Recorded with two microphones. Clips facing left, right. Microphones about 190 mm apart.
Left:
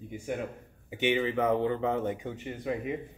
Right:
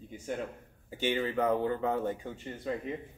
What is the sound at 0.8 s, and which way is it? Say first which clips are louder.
Speech: left 3 dB; 20° left (ahead or behind).